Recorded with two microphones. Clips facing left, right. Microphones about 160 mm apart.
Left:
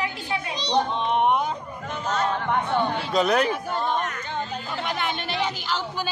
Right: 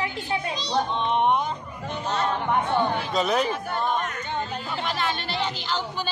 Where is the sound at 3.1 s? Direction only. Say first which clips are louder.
Left 2 dB; centre (ahead or behind).